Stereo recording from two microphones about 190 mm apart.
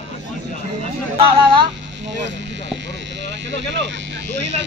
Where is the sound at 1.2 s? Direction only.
25° right (ahead or behind).